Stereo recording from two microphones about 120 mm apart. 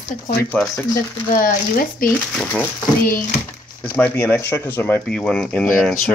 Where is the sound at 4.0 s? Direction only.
15° left (ahead or behind).